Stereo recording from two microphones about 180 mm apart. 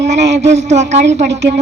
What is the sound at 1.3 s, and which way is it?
Speech, 70° right (ahead or behind).